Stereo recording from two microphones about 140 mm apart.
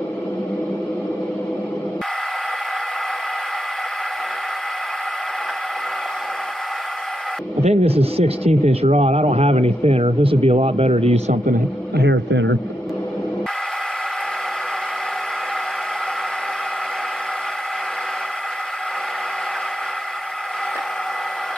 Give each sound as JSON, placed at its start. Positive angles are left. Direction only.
{"t": 7.6, "sound": "speech", "side_deg": -45}